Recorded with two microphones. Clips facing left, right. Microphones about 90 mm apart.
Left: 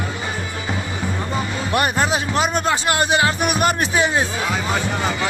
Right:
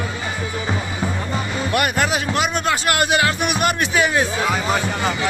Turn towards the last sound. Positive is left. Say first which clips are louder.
# even
turn(degrees=30)  # may be behind; listen again after turning